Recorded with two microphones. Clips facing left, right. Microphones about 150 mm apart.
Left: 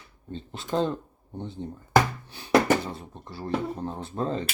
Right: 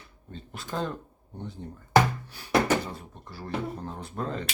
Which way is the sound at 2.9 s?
25° left (ahead or behind).